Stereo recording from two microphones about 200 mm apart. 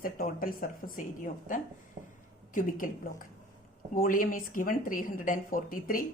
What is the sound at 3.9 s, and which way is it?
A woman's voice, 45° left (ahead or behind).